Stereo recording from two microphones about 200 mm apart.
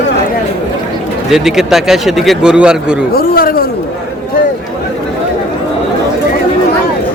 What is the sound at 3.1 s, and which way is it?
Speech, 50° left (ahead or behind).